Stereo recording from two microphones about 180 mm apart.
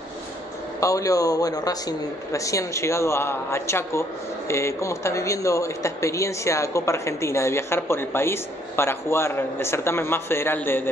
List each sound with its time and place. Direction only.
0.7 s speech: 20° left (ahead or behind)